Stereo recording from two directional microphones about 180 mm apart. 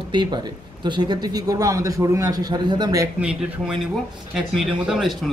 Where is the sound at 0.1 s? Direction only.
25° right (ahead or behind).